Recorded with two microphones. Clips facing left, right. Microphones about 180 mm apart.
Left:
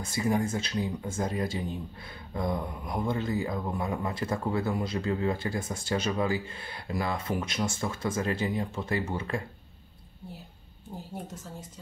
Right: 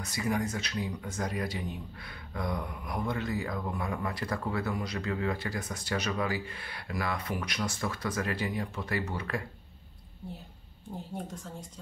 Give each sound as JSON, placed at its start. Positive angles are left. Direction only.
{"t": 0.0, "sound": "speech", "side_deg": 30}
{"t": 11.0, "sound": "speech", "side_deg": 5}